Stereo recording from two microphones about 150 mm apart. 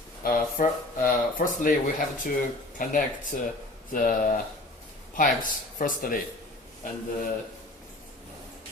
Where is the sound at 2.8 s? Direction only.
60° left (ahead or behind).